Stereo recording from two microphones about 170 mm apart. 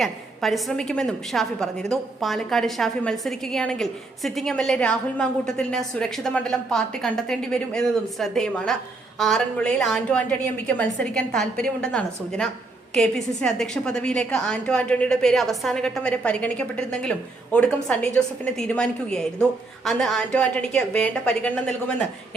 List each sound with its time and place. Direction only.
0.0 s a woman's voice: centre (ahead or behind)